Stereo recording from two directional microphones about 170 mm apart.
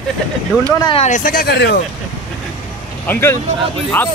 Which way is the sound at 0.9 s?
45° left (ahead or behind).